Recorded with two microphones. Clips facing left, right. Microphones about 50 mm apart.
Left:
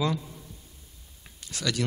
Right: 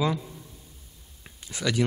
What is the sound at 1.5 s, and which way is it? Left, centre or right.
Speech, centre.